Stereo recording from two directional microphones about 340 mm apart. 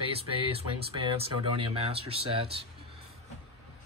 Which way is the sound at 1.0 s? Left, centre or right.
Centre.